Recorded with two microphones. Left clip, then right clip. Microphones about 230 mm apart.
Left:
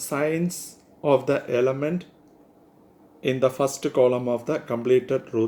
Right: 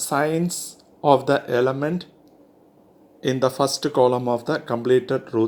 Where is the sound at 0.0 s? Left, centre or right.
Right.